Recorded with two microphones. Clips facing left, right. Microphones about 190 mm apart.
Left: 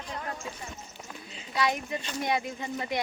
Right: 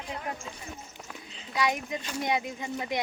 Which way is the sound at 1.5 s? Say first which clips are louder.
Even; 15° right (ahead or behind).